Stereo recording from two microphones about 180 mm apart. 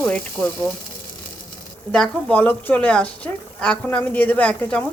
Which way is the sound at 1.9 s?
5° left (ahead or behind).